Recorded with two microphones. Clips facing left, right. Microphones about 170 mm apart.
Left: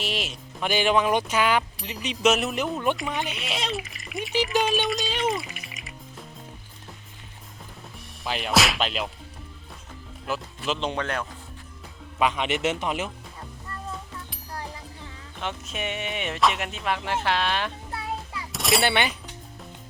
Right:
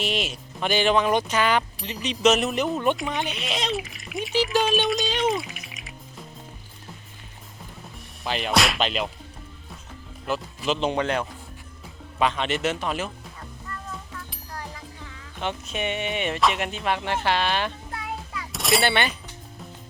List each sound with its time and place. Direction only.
0.0 s speech: centre (ahead or behind)
8.2 s speech: centre (ahead or behind)
10.2 s speech: centre (ahead or behind)
10.9 s speech: 20° right (ahead or behind)
12.2 s a man's voice: 10° left (ahead or behind)
15.4 s speech: centre (ahead or behind)
18.5 s a sound: centre (ahead or behind)
18.9 s a man's voice: 15° left (ahead or behind)